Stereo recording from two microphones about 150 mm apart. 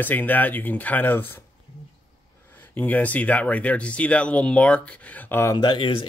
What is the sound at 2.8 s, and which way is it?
Speech, 10° left (ahead or behind).